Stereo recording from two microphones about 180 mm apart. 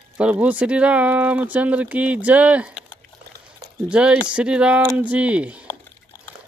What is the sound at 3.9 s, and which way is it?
Speech, 5° right (ahead or behind).